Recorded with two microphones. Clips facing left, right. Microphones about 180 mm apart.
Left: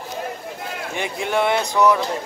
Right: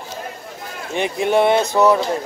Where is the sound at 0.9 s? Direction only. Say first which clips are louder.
Right 6 dB; 20° right (ahead or behind).